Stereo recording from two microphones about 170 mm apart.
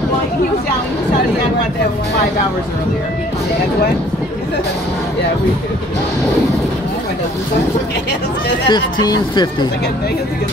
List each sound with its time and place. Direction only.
8.6 s speech: 25° left (ahead or behind)